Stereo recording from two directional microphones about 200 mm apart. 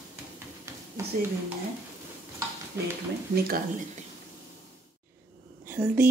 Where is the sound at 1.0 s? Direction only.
15° right (ahead or behind).